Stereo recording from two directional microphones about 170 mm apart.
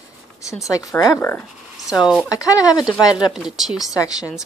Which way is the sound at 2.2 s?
20° left (ahead or behind).